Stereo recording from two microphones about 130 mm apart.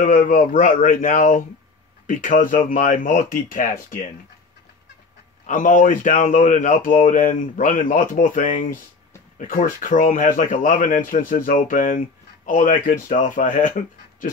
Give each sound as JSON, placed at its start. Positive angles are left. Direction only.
{"t": 0.0, "sound": "speech", "side_deg": 85}
{"t": 5.5, "sound": "speech", "side_deg": 85}